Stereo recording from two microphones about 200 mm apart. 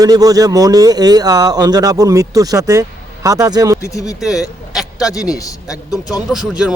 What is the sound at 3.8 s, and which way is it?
Speech, 15° left (ahead or behind).